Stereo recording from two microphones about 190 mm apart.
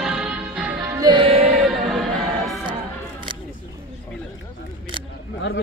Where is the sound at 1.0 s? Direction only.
25° right (ahead or behind).